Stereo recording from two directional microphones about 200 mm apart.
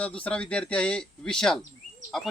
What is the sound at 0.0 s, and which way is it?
A man's voice, 5° left (ahead or behind).